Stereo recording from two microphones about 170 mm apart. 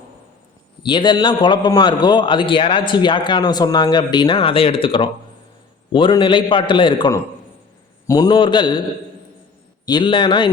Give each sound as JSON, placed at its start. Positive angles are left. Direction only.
{"t": 0.8, "sound": "a man's voice", "side_deg": 30}
{"t": 9.8, "sound": "a man's voice", "side_deg": 25}